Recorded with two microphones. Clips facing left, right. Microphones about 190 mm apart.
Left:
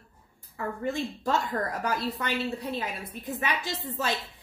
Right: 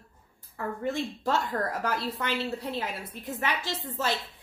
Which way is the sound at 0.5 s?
15° left (ahead or behind).